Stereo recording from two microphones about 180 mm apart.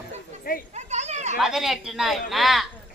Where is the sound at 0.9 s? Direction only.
40° right (ahead or behind).